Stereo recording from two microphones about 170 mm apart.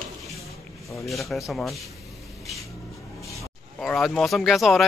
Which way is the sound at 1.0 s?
Centre (ahead or behind).